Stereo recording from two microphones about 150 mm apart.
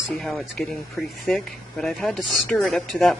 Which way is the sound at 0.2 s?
5° left (ahead or behind).